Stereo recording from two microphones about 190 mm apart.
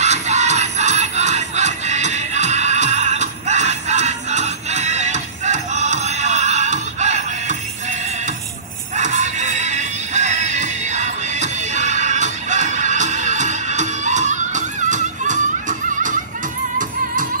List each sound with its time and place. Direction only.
0.0 s music: 35° right (ahead or behind)
8.9 s music: 40° right (ahead or behind)
15.9 s neigh: 40° right (ahead or behind)
16.7 s music: 45° right (ahead or behind)